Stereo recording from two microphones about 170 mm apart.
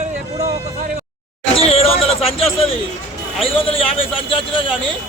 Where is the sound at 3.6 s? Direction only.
35° left (ahead or behind).